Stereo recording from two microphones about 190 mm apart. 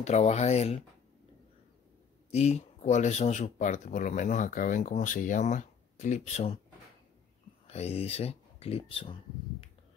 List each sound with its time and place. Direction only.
0.0 s speech: 35° left (ahead or behind)
2.3 s speech: 35° left (ahead or behind)
7.6 s speech: 35° left (ahead or behind)